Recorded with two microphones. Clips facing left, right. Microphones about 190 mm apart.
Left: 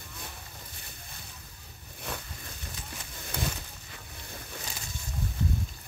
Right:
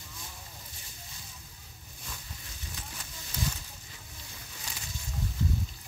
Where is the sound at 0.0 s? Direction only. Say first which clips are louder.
Left 3 dB; 60° left (ahead or behind).